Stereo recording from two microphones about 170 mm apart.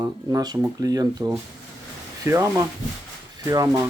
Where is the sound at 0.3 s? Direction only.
20° right (ahead or behind).